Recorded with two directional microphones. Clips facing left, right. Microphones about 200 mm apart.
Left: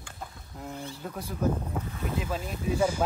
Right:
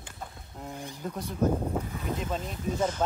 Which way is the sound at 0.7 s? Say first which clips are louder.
Left 2 dB; 15° right (ahead or behind).